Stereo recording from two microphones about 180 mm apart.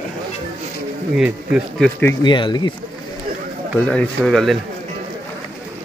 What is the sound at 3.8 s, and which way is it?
Speech, 5° left (ahead or behind).